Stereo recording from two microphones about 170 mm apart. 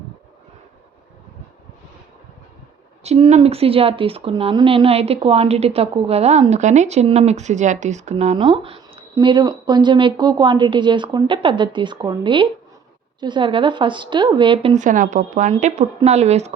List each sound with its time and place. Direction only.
3.0 s a woman's voice: 40° right (ahead or behind)
14.8 s a woman's voice: 50° right (ahead or behind)